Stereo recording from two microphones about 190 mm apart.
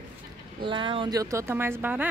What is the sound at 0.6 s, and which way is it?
Speech, 25° right (ahead or behind).